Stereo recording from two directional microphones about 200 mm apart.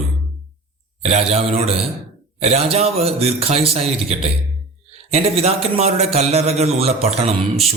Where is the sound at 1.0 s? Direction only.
30° right (ahead or behind).